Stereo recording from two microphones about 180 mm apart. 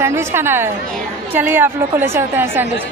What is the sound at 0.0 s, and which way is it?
A woman's voice, 15° right (ahead or behind).